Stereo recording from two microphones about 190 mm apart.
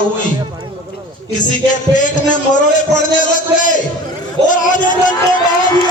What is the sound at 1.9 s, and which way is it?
A man's voice, 40° left (ahead or behind).